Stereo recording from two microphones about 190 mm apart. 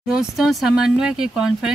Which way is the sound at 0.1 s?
Centre (ahead or behind).